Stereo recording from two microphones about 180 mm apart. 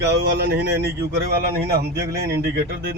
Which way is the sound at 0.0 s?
65° right (ahead or behind).